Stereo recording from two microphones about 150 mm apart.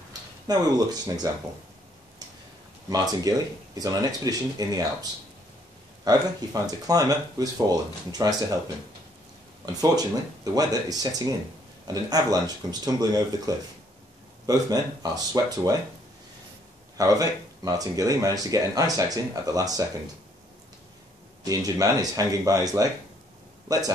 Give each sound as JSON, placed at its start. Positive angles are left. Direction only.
{"t": 0.5, "sound": "speech", "side_deg": -25}
{"t": 2.9, "sound": "speech", "side_deg": -25}
{"t": 6.0, "sound": "speech", "side_deg": -25}
{"t": 9.7, "sound": "speech", "side_deg": -25}
{"t": 16.9, "sound": "speech", "side_deg": -25}
{"t": 21.5, "sound": "speech", "side_deg": -25}